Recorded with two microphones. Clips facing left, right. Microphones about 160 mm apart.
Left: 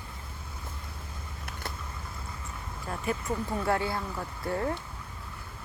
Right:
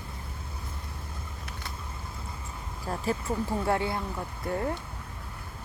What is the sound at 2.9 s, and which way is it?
Speech, 35° right (ahead or behind).